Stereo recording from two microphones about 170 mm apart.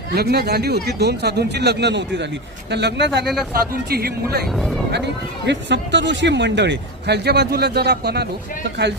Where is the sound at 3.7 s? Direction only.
65° right (ahead or behind).